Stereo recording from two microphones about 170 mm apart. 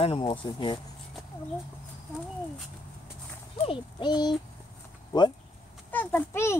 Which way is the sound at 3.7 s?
25° left (ahead or behind).